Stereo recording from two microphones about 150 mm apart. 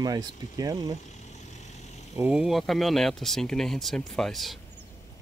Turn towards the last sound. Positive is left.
turn(degrees=0)  # may be behind; listen again after turning